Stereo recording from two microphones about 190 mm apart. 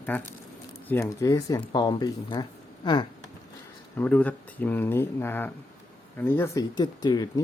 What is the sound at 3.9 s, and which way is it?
Speech, 10° left (ahead or behind).